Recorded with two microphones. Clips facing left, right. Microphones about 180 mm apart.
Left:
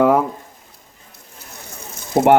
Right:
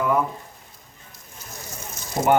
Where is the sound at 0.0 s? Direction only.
85° left.